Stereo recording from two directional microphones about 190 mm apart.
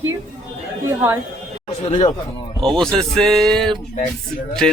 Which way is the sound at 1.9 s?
35° left (ahead or behind).